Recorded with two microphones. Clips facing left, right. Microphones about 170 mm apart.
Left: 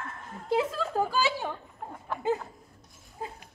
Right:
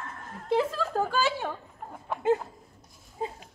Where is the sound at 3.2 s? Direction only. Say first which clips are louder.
Right 5 dB; 25° right (ahead or behind).